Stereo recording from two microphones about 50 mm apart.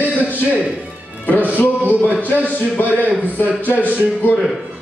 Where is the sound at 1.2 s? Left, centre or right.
Left.